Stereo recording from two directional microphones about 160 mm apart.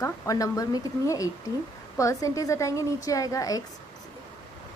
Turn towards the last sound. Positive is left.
turn(degrees=20)  # may be behind; listen again after turning